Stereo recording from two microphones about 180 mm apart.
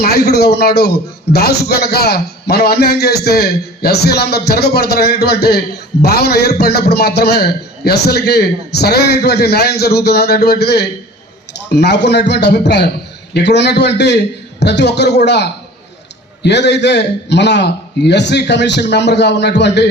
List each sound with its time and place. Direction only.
0.0 s a man's voice: 60° left (ahead or behind)